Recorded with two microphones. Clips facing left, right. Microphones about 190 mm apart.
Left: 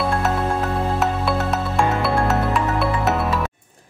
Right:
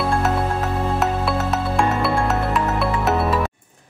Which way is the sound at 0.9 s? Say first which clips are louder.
Even; centre (ahead or behind).